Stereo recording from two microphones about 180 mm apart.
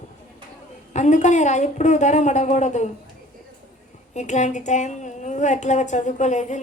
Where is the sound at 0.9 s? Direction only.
40° left (ahead or behind).